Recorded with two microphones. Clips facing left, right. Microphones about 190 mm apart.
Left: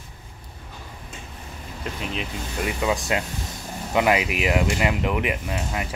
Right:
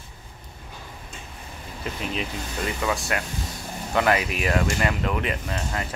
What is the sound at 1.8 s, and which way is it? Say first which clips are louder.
Speech: right 1 dB; centre (ahead or behind).